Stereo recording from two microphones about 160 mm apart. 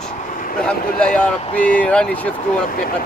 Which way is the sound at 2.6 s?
60° left (ahead or behind).